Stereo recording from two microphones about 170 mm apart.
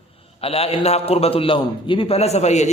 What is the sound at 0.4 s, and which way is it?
A man's voice, 35° left (ahead or behind).